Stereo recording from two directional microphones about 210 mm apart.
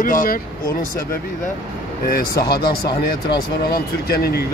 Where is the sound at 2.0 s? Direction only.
45° left (ahead or behind).